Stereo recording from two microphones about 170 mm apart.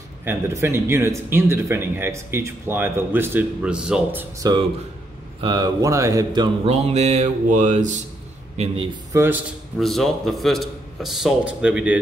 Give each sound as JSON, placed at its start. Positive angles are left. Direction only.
{"t": 0.2, "sound": "speech", "side_deg": -15}
{"t": 5.4, "sound": "mantra", "side_deg": -25}
{"t": 9.1, "sound": "speech", "side_deg": -15}
{"t": 9.8, "sound": "a man's voice", "side_deg": 0}